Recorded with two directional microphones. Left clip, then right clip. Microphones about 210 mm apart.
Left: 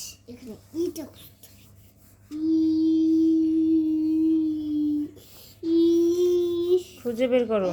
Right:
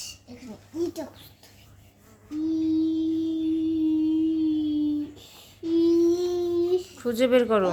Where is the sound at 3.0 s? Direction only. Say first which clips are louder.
Left 6 dB; 10° left (ahead or behind).